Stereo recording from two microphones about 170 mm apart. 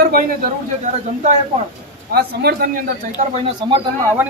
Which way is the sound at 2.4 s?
65° right (ahead or behind).